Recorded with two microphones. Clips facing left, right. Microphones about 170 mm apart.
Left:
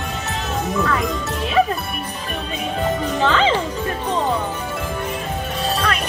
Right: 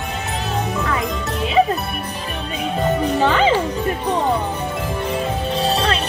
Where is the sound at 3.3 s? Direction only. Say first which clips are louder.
Even; 10° right (ahead or behind).